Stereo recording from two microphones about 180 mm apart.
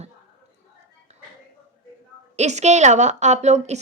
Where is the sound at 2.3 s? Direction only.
40° right (ahead or behind).